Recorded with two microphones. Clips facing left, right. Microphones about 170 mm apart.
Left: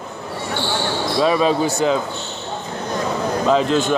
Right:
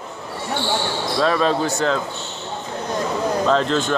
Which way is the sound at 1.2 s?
10° left (ahead or behind).